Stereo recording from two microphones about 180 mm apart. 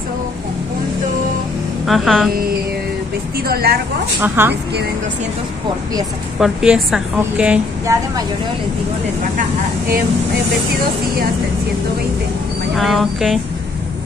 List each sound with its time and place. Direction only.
1.9 s a woman's voice: centre (ahead or behind)
3.4 s a woman's voice: 60° right (ahead or behind)
4.2 s speech: 10° right (ahead or behind)
6.4 s a woman's voice: 5° right (ahead or behind)
7.9 s speech: 15° right (ahead or behind)
12.7 s a woman's voice: centre (ahead or behind)